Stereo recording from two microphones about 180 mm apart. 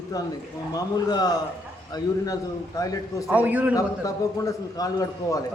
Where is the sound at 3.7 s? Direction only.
20° left (ahead or behind).